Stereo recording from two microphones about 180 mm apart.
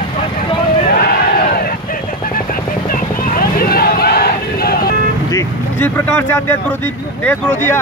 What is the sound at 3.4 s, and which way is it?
Vehicle, 55° left (ahead or behind).